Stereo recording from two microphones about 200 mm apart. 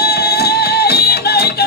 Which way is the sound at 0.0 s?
50° left (ahead or behind).